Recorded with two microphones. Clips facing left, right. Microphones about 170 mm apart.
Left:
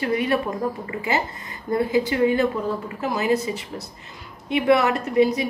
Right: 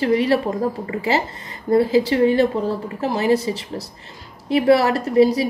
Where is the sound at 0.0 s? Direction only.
30° right (ahead or behind).